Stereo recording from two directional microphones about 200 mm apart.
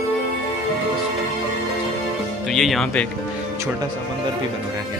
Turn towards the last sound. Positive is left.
turn(degrees=5)  # may be behind; listen again after turning